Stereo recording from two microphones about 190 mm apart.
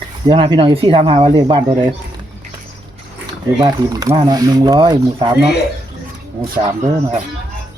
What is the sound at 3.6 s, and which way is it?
Speech, 20° right (ahead or behind).